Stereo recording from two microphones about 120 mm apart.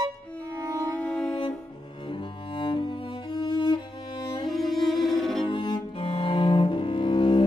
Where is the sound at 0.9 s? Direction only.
10° left (ahead or behind).